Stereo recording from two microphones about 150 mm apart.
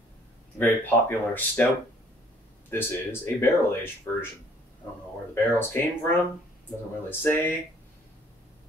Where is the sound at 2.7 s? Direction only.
15° left (ahead or behind).